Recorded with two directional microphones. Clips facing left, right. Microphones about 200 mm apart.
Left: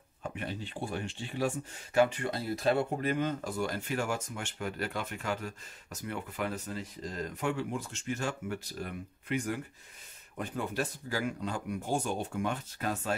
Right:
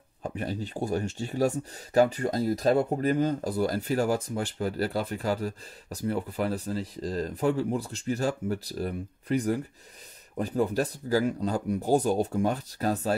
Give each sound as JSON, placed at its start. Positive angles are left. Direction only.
{"t": 0.2, "sound": "speech", "side_deg": -40}